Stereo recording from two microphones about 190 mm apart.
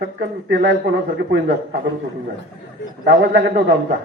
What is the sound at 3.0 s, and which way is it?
Speech, 55° right (ahead or behind).